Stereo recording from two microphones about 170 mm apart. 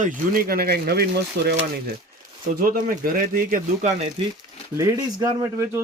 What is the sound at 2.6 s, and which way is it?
Speech, 55° right (ahead or behind).